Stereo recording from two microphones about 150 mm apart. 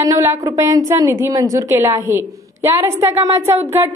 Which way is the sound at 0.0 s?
20° right (ahead or behind).